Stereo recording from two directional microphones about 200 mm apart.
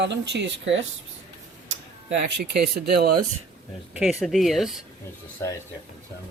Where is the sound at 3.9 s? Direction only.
Centre (ahead or behind).